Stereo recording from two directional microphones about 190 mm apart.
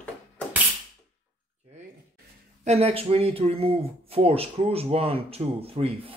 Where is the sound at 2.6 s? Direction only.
30° right (ahead or behind).